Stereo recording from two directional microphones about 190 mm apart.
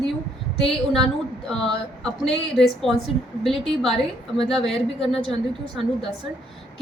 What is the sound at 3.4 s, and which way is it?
A woman's voice, centre (ahead or behind).